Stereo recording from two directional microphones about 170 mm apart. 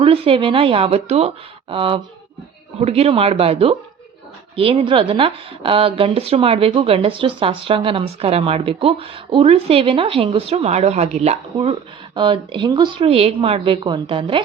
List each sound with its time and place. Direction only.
0.0 s a woman's voice: 30° right (ahead or behind)